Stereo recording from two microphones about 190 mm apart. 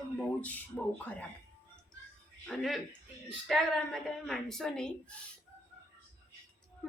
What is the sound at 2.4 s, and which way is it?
A woman's voice, centre (ahead or behind).